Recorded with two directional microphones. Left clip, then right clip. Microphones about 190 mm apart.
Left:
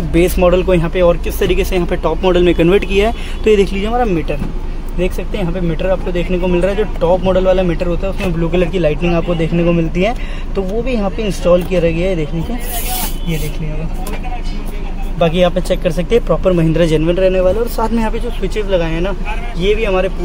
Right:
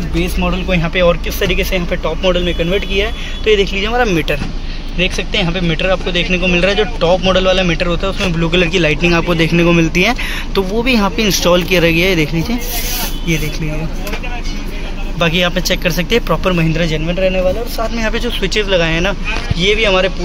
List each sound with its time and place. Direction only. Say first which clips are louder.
0.2 s speech: left 8 dB; 55° left (ahead or behind)
0.8 s speech: even; 20° left (ahead or behind)
3.9 s speech: right 2 dB; centre (ahead or behind)
15.1 s speech: left 1 dB; 5° left (ahead or behind)
16.7 s speech: left 4 dB; 35° left (ahead or behind)
18.1 s speech: right 4 dB; centre (ahead or behind)